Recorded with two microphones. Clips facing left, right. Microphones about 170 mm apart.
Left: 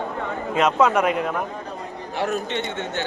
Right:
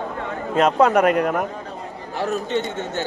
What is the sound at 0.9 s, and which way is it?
Speech, 55° right (ahead or behind).